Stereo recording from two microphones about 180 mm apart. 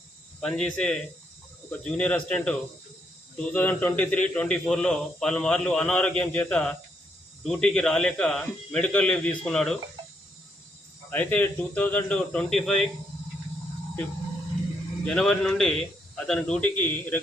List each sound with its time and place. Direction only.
0.4 s a man's voice: 5° left (ahead or behind)
11.1 s speech: 10° left (ahead or behind)
15.0 s a man's voice: 5° left (ahead or behind)